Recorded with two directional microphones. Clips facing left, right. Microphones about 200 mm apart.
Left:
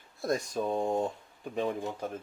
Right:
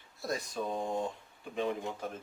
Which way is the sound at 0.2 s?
50° left (ahead or behind).